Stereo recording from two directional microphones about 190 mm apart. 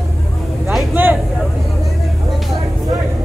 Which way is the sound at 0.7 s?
10° right (ahead or behind).